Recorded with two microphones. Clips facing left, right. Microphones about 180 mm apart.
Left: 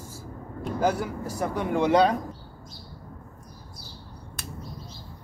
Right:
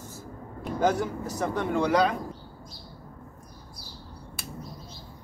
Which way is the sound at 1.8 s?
25° left (ahead or behind).